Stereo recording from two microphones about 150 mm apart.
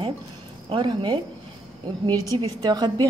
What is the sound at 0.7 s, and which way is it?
A woman's voice, 30° right (ahead or behind).